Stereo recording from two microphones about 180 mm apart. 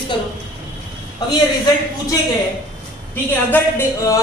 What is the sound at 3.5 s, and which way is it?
Speech, 15° left (ahead or behind).